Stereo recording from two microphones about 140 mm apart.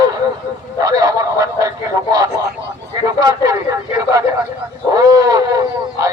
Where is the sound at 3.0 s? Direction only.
25° right (ahead or behind).